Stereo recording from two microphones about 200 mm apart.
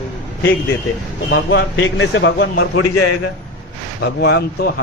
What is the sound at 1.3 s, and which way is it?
A man's voice, 65° left (ahead or behind).